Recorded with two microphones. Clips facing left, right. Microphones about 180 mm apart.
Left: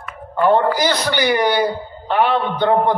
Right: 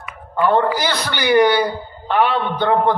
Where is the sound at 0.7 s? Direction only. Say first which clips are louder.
Left 3 dB; 45° left (ahead or behind).